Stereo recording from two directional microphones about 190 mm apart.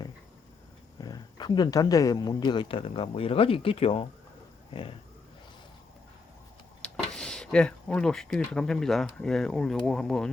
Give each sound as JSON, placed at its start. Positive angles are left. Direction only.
{"t": 1.0, "sound": "speech", "side_deg": 20}
{"t": 6.8, "sound": "speech", "side_deg": 5}